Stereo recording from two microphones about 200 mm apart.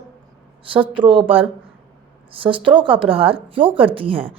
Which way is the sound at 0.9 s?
25° right (ahead or behind).